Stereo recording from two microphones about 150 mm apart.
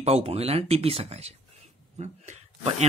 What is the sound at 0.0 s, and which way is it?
A man's voice, 40° right (ahead or behind).